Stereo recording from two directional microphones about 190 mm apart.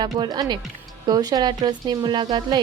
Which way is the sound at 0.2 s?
20° right (ahead or behind).